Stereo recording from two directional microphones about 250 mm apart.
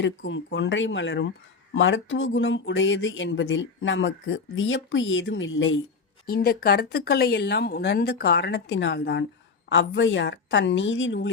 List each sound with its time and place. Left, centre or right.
0.0 s speech: left
6.2 s speech: left